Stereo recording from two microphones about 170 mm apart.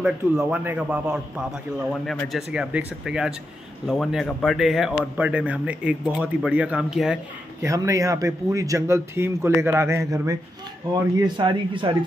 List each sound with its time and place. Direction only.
0.0 s a man's voice: 5° right (ahead or behind)
7.6 s speech: 20° right (ahead or behind)